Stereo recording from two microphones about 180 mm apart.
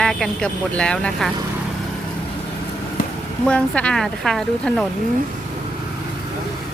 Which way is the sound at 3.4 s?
5° left (ahead or behind).